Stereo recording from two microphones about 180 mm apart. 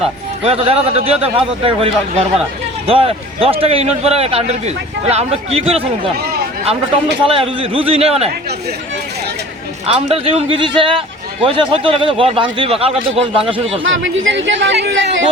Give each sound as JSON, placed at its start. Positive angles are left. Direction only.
{"t": 0.0, "sound": "speech", "side_deg": -35}
{"t": 7.3, "sound": "speech", "side_deg": -30}
{"t": 9.8, "sound": "speech", "side_deg": -35}
{"t": 13.8, "sound": "speech", "side_deg": -90}